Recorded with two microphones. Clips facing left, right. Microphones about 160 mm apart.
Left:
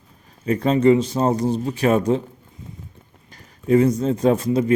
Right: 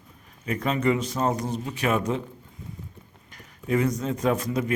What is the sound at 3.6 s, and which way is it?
Speech, 30° left (ahead or behind).